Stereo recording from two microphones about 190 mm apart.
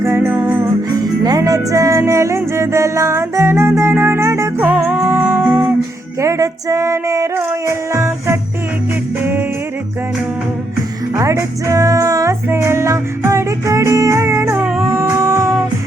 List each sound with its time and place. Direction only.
0.0 s music: 15° right (ahead or behind)
11.1 s music: 15° right (ahead or behind)
14.8 s howl: 15° right (ahead or behind)